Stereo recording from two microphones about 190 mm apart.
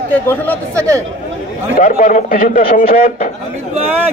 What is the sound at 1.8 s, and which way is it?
A man's voice, 45° left (ahead or behind).